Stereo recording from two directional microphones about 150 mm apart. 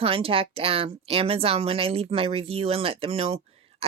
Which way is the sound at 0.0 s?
40° right (ahead or behind).